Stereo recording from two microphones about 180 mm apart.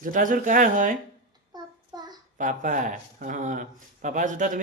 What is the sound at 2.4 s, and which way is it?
Speech, 45° right (ahead or behind).